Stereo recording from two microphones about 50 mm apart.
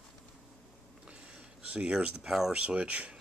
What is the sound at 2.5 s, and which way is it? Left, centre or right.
Speech, right.